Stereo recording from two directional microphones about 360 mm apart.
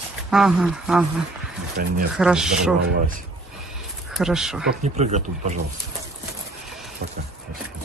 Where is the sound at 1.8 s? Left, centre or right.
Right.